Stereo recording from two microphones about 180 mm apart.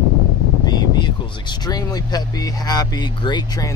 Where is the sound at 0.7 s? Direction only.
25° left (ahead or behind).